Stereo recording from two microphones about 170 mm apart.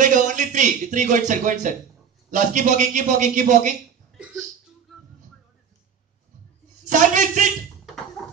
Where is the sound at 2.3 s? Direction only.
50° right (ahead or behind).